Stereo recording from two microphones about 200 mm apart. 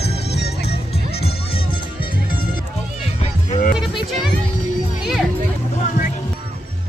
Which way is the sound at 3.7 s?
Centre (ahead or behind).